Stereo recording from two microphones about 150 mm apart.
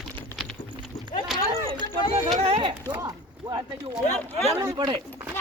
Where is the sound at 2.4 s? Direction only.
35° right (ahead or behind).